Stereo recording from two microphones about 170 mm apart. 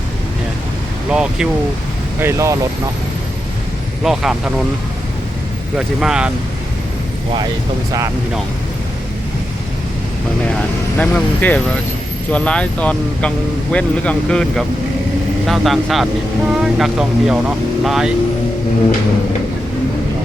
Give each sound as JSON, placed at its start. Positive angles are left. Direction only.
{"t": 1.1, "sound": "speech", "side_deg": -5}
{"t": 2.2, "sound": "speech", "side_deg": -20}
{"t": 4.0, "sound": "speech", "side_deg": 0}
{"t": 5.7, "sound": "speech", "side_deg": -5}
{"t": 10.9, "sound": "speech", "side_deg": 10}